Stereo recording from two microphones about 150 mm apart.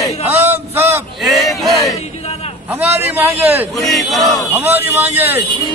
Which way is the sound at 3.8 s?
Centre (ahead or behind).